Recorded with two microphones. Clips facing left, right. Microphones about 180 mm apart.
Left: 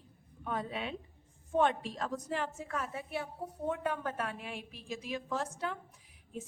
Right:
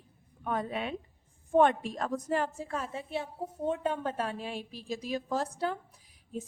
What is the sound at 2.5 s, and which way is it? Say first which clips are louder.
A woman's voice: right 2 dB; 30° right (ahead or behind).